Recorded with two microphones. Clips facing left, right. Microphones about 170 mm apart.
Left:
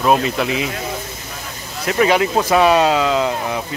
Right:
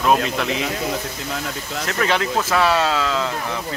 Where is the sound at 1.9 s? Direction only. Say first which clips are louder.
Left 6 dB; 10° left (ahead or behind).